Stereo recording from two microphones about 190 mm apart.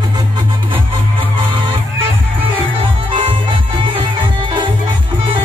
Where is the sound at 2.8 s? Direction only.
25° right (ahead or behind).